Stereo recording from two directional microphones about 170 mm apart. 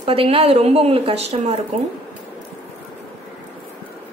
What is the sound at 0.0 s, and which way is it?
A woman's voice, 30° right (ahead or behind).